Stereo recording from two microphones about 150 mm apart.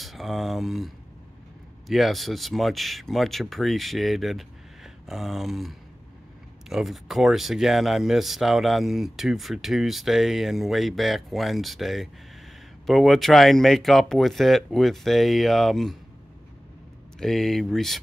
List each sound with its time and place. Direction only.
0.0 s speech: centre (ahead or behind)
17.2 s speech: centre (ahead or behind)